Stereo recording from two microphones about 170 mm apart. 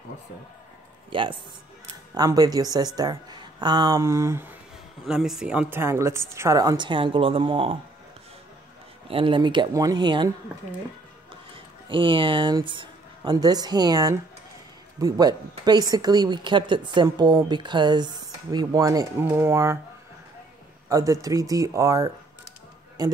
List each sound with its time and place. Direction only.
1.1 s speech: 30° right (ahead or behind); by 4.6 s 15° right (ahead or behind)
5.0 s a woman's voice: 5° right (ahead or behind); by 7.7 s 30° right (ahead or behind)
9.0 s speech: 30° right (ahead or behind)
11.5 s speech: 30° right (ahead or behind)
20.9 s speech: 20° right (ahead or behind)